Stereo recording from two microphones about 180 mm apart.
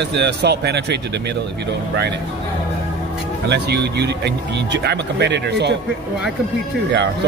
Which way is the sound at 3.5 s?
70° right (ahead or behind).